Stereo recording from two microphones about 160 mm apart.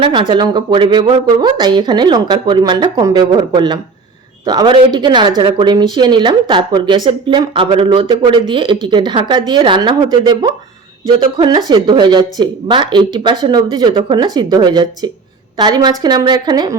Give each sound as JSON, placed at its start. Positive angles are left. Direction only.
{"t": 0.0, "sound": "speech", "side_deg": -30}